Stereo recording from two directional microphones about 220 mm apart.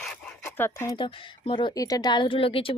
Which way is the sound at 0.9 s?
20° left (ahead or behind).